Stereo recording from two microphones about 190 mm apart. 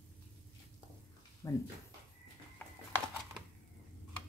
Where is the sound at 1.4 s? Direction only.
20° left (ahead or behind).